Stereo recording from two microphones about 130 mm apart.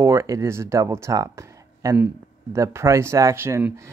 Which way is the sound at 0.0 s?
25° right (ahead or behind).